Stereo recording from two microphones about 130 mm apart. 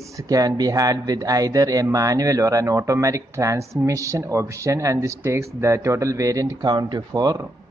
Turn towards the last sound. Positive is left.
turn(degrees=-30)  # may be behind; listen again after turning